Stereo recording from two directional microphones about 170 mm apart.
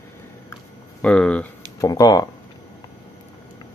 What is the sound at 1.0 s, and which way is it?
Speech, 5° left (ahead or behind).